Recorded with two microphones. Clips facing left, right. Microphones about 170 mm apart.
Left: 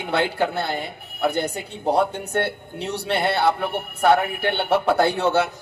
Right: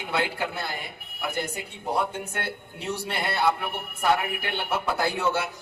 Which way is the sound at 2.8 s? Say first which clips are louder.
Left 7 dB; 70° left (ahead or behind).